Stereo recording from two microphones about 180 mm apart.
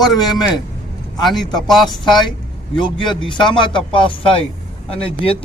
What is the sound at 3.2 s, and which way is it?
A man's voice, 25° left (ahead or behind).